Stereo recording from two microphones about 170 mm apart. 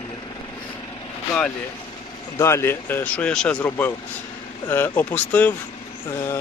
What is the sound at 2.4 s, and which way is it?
Speech, 15° left (ahead or behind).